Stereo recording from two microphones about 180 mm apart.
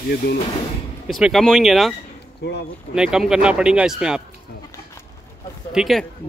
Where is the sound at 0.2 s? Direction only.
65° left (ahead or behind).